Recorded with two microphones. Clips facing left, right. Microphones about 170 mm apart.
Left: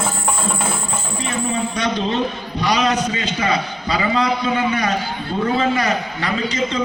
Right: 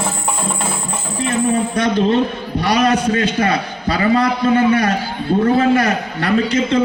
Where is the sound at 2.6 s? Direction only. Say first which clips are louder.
Right 3 dB; 55° right (ahead or behind).